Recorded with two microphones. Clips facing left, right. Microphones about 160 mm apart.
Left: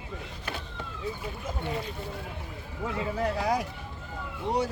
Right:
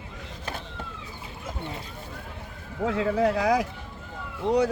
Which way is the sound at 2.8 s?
90° right.